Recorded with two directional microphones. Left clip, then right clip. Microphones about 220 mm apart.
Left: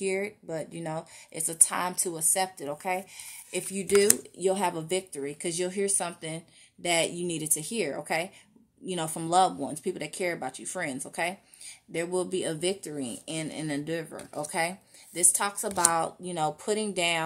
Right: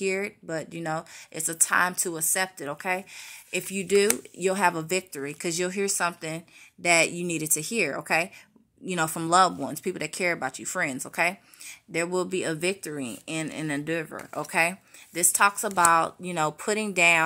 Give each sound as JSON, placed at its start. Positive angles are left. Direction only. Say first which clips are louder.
{"t": 0.0, "sound": "speech", "louder": "right 2 dB", "side_deg": -25}